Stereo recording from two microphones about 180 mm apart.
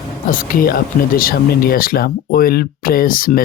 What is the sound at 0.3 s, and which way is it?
Speech, 50° left (ahead or behind).